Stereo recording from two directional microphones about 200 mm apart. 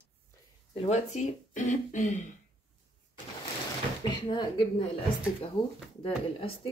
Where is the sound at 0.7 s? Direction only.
30° left (ahead or behind).